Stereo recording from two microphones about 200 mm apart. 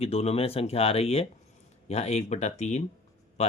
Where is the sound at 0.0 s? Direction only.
30° left (ahead or behind).